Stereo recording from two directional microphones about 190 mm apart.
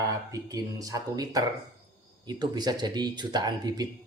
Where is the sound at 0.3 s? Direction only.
20° right (ahead or behind).